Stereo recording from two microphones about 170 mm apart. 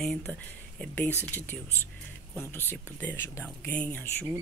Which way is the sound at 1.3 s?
10° left (ahead or behind).